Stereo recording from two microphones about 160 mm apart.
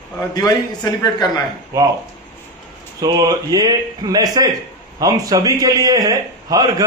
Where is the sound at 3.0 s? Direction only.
25° right (ahead or behind).